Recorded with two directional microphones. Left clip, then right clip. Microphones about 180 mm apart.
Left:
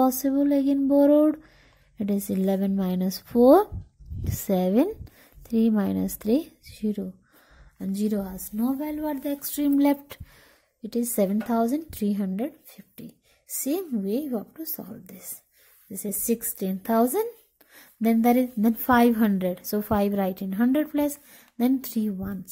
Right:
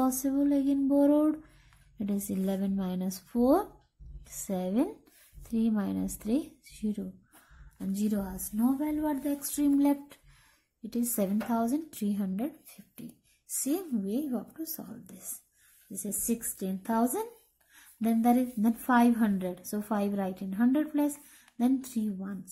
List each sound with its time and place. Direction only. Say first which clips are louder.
0.0 s a woman's voice: left 6 dB; 35° left (ahead or behind); by 22.4 s 50° left (ahead or behind)